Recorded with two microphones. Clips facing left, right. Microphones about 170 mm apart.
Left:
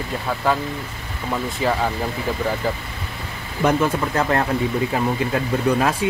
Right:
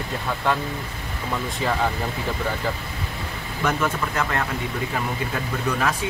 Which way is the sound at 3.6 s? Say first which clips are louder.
Left 5 dB; 30° left (ahead or behind).